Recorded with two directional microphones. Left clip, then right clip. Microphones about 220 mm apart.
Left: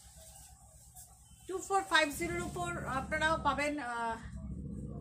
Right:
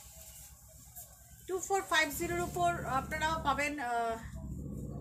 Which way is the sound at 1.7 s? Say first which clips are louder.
Left 1 dB; 15° left (ahead or behind).